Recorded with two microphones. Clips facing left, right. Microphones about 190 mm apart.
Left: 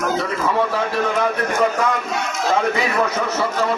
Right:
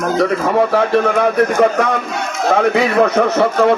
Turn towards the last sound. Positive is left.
turn(degrees=-65)  # may be behind; listen again after turning